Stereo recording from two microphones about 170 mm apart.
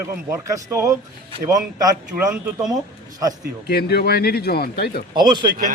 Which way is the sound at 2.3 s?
5° right (ahead or behind).